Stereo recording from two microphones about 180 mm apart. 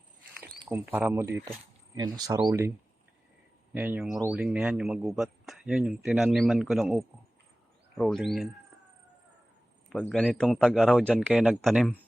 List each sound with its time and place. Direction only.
0.7 s speech: 10° right (ahead or behind)
3.8 s speech: 10° right (ahead or behind)
9.9 s speech: 5° left (ahead or behind)